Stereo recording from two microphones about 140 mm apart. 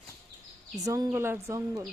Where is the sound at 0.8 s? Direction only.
25° right (ahead or behind).